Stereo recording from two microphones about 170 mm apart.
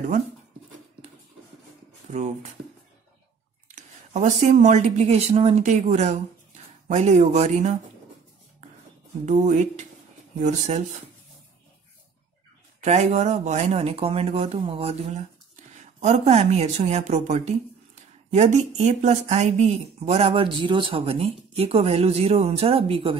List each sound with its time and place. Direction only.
2.0 s speech: 45° right (ahead or behind)
3.7 s a woman's voice: 45° right (ahead or behind)
9.2 s a woman's voice: 45° right (ahead or behind)
12.8 s speech: 40° right (ahead or behind)